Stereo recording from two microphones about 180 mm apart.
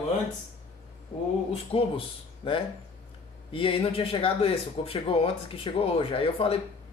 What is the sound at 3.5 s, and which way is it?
Speech, 30° left (ahead or behind).